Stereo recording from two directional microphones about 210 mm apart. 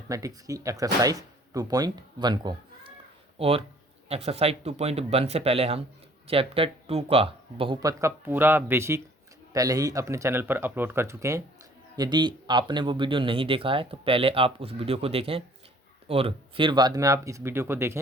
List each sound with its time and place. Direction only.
0.1 s speech: 15° right (ahead or behind)